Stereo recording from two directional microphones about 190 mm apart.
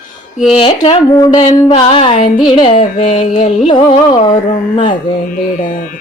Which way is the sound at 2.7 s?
35° left (ahead or behind).